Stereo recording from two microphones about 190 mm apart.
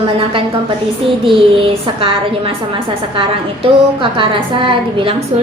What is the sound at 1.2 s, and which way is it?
A woman's voice, 30° right (ahead or behind).